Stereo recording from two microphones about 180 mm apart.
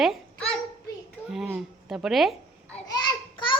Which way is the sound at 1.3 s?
5° right (ahead or behind).